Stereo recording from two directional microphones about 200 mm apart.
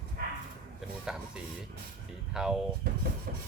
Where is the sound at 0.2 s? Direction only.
50° right (ahead or behind).